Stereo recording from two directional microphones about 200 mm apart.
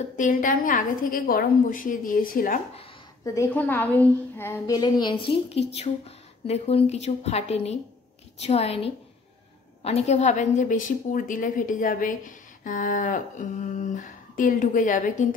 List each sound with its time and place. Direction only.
0.2 s a woman's voice: 45° left (ahead or behind)
3.3 s a woman's voice: 10° left (ahead or behind); by 15.2 s 40° left (ahead or behind)